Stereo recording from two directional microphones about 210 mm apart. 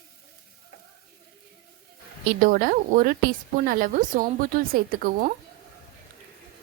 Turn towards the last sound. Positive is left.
turn(degrees=-40)  # may be behind; listen again after turning